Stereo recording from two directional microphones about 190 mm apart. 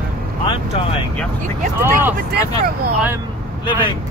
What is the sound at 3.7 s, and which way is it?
Speech, 25° left (ahead or behind).